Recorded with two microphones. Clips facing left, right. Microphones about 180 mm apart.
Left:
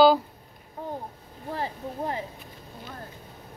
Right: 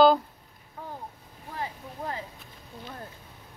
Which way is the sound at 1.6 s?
25° left (ahead or behind).